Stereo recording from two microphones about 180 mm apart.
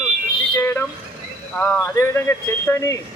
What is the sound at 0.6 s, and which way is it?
Speech, 10° left (ahead or behind).